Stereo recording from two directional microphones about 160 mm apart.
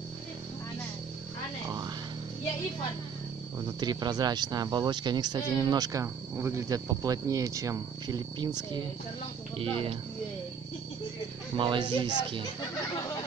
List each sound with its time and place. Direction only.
3.5 s speech: 25° right (ahead or behind)
11.5 s speech: 30° right (ahead or behind)